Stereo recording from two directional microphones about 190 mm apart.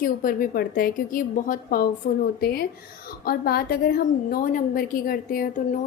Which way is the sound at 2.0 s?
60° left (ahead or behind).